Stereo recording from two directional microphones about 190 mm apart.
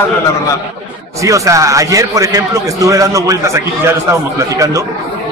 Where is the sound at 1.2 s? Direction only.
15° right (ahead or behind).